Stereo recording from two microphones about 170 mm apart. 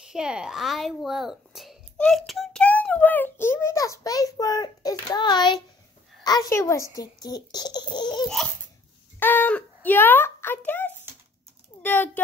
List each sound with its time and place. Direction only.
0.0 s a child's voice: 5° right (ahead or behind); by 8.3 s 25° left (ahead or behind)
9.2 s a sound: 10° left (ahead or behind)
9.8 s a child's voice: 10° left (ahead or behind)